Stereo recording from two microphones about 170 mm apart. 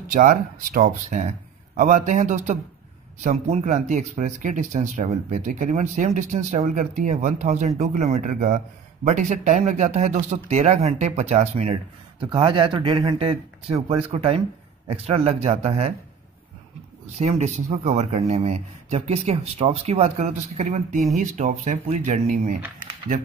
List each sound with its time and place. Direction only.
0.1 s speech: 55° right (ahead or behind); by 15.9 s 35° right (ahead or behind)
17.2 s speech: 40° right (ahead or behind)